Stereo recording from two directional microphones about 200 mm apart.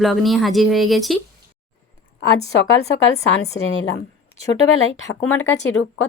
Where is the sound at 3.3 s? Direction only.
65° left (ahead or behind).